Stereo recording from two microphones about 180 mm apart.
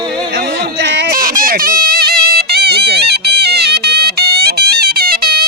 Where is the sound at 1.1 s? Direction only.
50° right (ahead or behind).